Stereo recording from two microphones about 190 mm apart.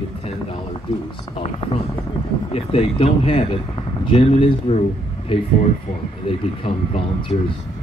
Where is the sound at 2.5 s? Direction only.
30° left (ahead or behind).